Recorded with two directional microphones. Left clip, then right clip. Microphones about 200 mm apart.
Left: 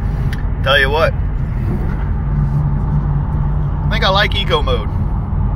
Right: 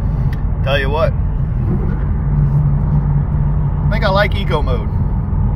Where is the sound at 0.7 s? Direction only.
10° right (ahead or behind).